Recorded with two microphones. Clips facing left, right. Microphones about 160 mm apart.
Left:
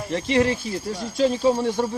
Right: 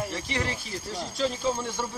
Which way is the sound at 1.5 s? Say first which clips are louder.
Left 9 dB; 40° left (ahead or behind).